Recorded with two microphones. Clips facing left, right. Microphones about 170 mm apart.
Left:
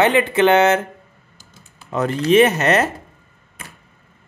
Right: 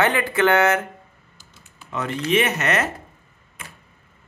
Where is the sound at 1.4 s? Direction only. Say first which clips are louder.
Left 1 dB; 40° left (ahead or behind).